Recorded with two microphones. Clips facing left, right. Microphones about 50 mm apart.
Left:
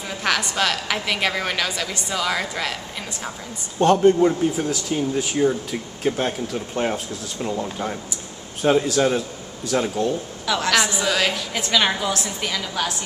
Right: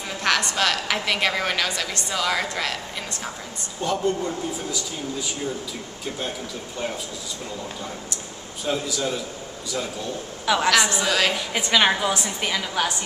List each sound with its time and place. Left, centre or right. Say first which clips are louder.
0.2 s a woman's voice: even; centre
3.8 s speech: left 9 dB; left
8.6 s speech: left 8 dB; left
10.4 s a woman's voice: right 2 dB; centre